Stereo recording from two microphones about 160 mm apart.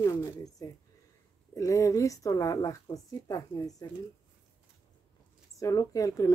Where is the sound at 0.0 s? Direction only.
20° left (ahead or behind).